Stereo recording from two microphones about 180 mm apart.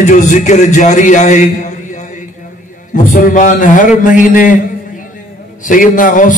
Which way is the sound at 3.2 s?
45° left (ahead or behind).